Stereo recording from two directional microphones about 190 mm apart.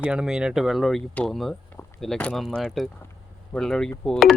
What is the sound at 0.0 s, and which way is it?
A man's voice, 5° right (ahead or behind).